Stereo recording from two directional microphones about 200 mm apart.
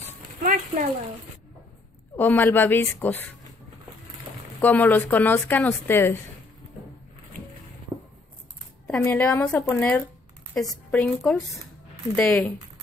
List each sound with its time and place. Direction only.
0.4 s speech: 45° right (ahead or behind)
2.1 s speech: 10° left (ahead or behind)
4.6 s speech: 10° left (ahead or behind)
8.8 s speech: 5° left (ahead or behind)